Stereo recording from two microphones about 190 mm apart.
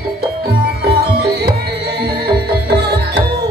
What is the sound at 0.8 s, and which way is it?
Music, 55° right (ahead or behind).